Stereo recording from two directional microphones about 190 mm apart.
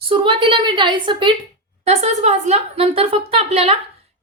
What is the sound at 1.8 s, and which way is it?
A woman's voice, 35° right (ahead or behind).